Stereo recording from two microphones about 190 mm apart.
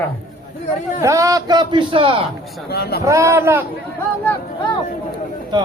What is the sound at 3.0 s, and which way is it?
Speech, 15° right (ahead or behind).